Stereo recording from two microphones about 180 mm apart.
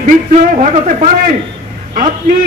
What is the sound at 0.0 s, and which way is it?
A man's voice, 45° right (ahead or behind).